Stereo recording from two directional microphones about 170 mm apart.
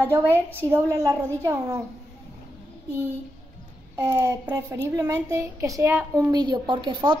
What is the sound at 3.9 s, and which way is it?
A woman's voice, 15° right (ahead or behind).